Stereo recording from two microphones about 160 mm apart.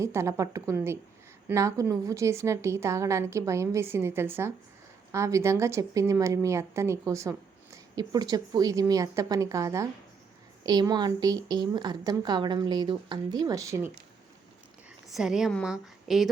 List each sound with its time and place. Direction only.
0.0 s a woman's voice: 15° right (ahead or behind)
15.1 s a woman's voice: 5° right (ahead or behind)